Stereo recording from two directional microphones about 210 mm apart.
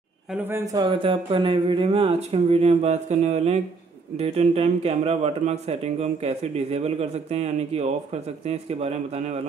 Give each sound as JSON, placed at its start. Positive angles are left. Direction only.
{"t": 0.3, "sound": "speech", "side_deg": -10}